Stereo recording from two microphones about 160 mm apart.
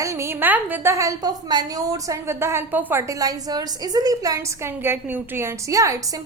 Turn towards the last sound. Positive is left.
turn(degrees=-20)  # may be behind; listen again after turning